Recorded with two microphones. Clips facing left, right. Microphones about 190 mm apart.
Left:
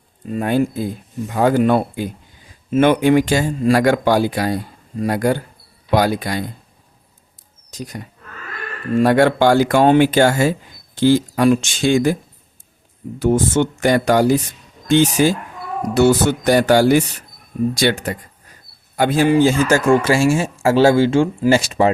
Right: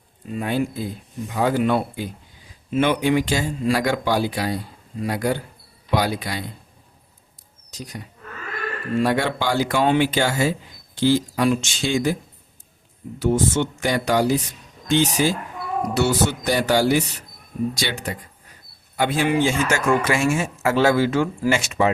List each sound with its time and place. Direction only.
0.3 s speech: 50° left (ahead or behind)
7.7 s speech: 50° left (ahead or behind)
9.0 s speech: 50° left (ahead or behind)
13.1 s speech: 50° left (ahead or behind); by 21.9 s 35° left (ahead or behind)